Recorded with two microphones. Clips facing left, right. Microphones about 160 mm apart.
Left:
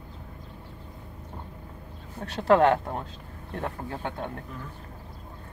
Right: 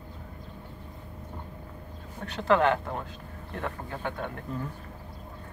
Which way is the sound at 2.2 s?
35° left (ahead or behind).